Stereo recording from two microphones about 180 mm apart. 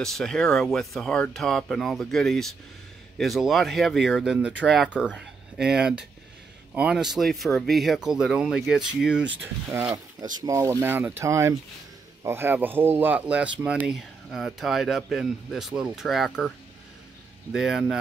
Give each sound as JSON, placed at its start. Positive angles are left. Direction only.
{"t": 0.0, "sound": "speech", "side_deg": 0}